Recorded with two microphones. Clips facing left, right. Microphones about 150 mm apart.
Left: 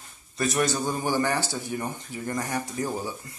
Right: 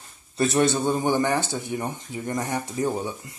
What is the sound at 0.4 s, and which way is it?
Speech, 30° right (ahead or behind).